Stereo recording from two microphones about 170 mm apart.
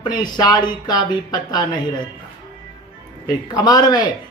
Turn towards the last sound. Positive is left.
turn(degrees=25)  # may be behind; listen again after turning